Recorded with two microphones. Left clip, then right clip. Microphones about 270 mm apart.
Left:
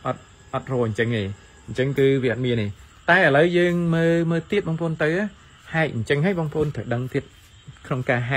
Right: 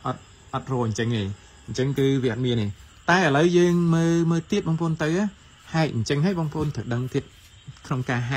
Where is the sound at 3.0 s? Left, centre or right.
Centre.